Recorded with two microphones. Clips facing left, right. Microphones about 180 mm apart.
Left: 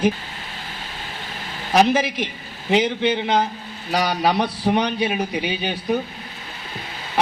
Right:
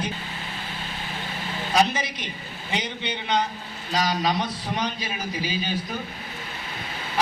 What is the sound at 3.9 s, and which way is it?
A man's voice, 70° left (ahead or behind).